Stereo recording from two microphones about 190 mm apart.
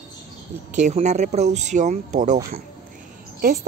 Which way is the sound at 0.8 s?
40° right (ahead or behind).